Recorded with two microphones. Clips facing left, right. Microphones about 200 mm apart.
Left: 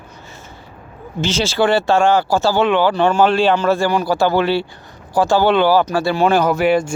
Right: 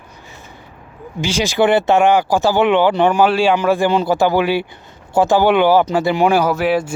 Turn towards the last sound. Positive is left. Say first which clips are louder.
# left 1 dB
turn(degrees=-5)  # may be behind; listen again after turning